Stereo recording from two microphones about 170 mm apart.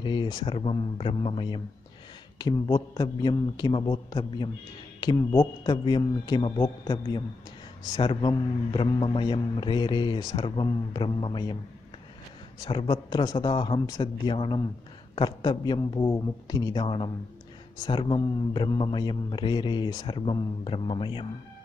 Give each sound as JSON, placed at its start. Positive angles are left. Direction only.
{"t": 0.0, "sound": "a man's voice", "side_deg": 30}
{"t": 12.5, "sound": "a man's voice", "side_deg": 25}